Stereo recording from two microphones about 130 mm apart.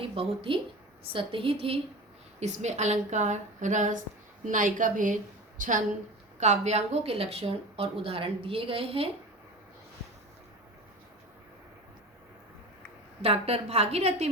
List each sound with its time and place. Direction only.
0.1 s a woman's voice: 45° right (ahead or behind)
2.4 s a woman's voice: 60° right (ahead or behind)
4.4 s a woman's voice: 90° right
6.4 s a woman's voice: 60° right (ahead or behind)
13.2 s a woman's voice: 50° right (ahead or behind)